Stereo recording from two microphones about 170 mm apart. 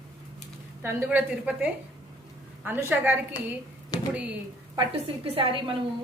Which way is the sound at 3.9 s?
25° left (ahead or behind).